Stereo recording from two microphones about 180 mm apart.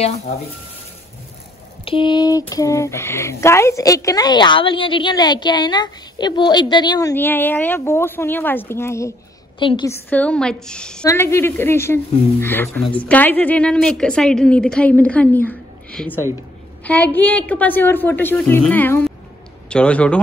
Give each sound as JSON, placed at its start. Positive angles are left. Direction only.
{"t": 1.9, "sound": "speech", "side_deg": 25}
{"t": 9.6, "sound": "speech", "side_deg": 25}
{"t": 9.8, "sound": "a woman's voice", "side_deg": 10}